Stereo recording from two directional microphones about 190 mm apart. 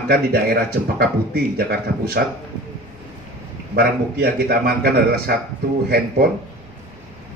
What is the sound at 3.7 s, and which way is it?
A man's voice, 55° right (ahead or behind).